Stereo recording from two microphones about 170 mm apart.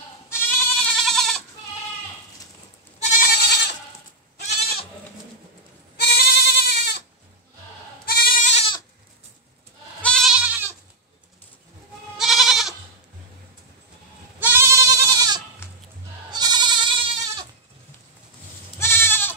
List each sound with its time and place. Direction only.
0.4 s goat: 5° left (ahead or behind)
3.0 s goat: 45° left (ahead or behind)
3.3 s goat: 75° left (ahead or behind)
6.0 s goat: 70° left (ahead or behind)
8.1 s goat: 60° left (ahead or behind)
8.5 s goat: 35° left (ahead or behind)
10.0 s goat: centre (ahead or behind)
12.2 s goat: centre (ahead or behind)
14.4 s goat: 15° right (ahead or behind)
16.3 s sheep: 25° right (ahead or behind)
18.8 s goat: 15° left (ahead or behind)